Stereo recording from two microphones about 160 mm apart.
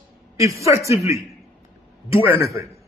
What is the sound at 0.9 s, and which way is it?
Speech, 20° right (ahead or behind).